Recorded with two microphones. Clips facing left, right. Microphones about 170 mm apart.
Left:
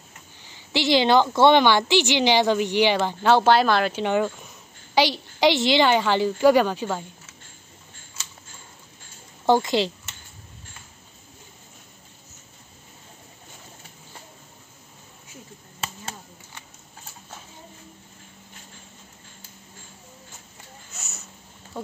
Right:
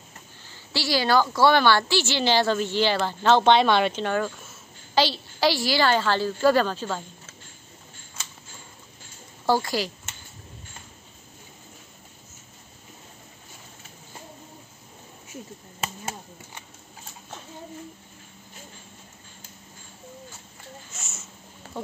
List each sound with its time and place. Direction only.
0.5 s a woman's voice: 20° left (ahead or behind); by 4.0 s centre (ahead or behind)
4.0 s a woman's voice: 15° left (ahead or behind)
9.5 s a woman's voice: 20° left (ahead or behind)
20.9 s a sound: centre (ahead or behind)